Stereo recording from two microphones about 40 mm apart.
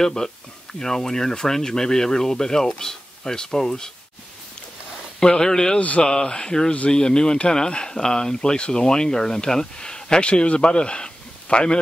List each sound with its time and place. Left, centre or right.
0.0 s speech: centre
5.2 s speech: centre
5.8 s speech: left
6.0 s speech: centre